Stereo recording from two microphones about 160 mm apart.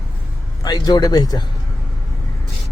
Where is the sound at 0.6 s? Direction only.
25° left (ahead or behind).